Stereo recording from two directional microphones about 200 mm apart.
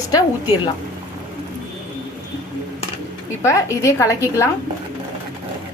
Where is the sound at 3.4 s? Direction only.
15° left (ahead or behind).